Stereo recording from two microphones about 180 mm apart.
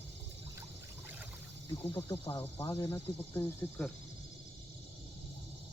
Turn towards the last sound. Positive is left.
turn(degrees=10)  # may be behind; listen again after turning